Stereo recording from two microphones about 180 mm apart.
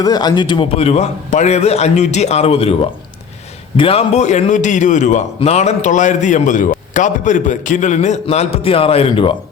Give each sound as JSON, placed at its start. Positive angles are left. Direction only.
{"t": 0.0, "sound": "a man's voice", "side_deg": 20}
{"t": 3.8, "sound": "a man's voice", "side_deg": 30}